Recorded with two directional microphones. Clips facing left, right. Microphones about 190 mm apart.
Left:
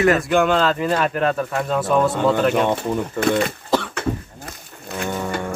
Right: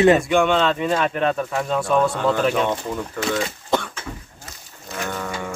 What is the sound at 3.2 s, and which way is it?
Speech, 55° left (ahead or behind).